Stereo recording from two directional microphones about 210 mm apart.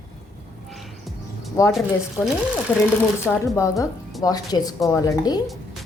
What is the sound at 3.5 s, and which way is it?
A woman's voice, 15° left (ahead or behind).